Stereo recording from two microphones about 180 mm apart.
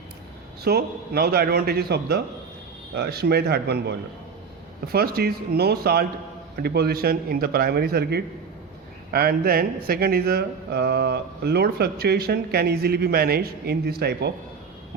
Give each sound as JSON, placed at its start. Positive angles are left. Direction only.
{"t": 0.6, "sound": "speech", "side_deg": -60}